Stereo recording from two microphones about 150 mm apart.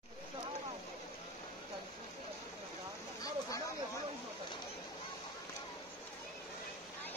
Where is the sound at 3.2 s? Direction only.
25° left (ahead or behind).